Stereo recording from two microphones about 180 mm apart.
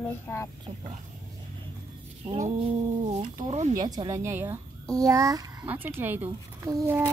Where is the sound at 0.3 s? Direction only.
10° left (ahead or behind).